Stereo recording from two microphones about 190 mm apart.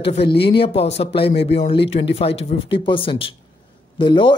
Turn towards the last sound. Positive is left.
turn(degrees=25)  # may be behind; listen again after turning